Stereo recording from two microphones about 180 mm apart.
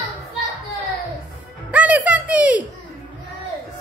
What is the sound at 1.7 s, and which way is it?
Speech, 5° right (ahead or behind).